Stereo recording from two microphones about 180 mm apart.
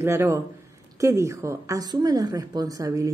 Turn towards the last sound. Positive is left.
turn(degrees=-20)  # may be behind; listen again after turning